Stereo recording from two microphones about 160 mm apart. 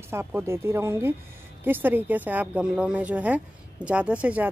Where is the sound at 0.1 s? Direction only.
15° right (ahead or behind).